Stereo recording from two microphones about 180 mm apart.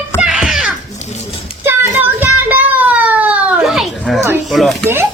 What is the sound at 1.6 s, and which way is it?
Child singing, 10° right (ahead or behind).